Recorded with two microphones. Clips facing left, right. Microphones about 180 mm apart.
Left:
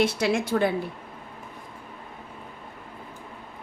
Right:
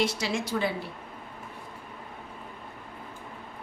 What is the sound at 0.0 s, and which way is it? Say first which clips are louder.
Speech: left 5 dB; 55° left (ahead or behind).